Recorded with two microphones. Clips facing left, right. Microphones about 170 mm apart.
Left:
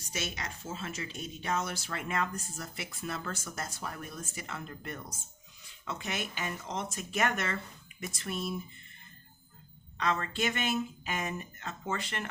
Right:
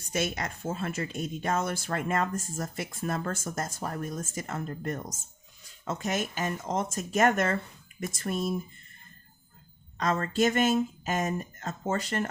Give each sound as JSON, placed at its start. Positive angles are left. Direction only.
{"t": 0.0, "sound": "speech", "side_deg": -50}
{"t": 10.0, "sound": "speech", "side_deg": -45}